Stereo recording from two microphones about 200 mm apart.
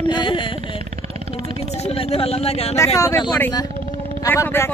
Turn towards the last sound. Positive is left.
turn(degrees=10)  # may be behind; listen again after turning